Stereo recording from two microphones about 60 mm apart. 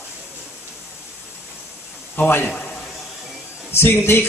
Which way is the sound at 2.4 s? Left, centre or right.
Centre.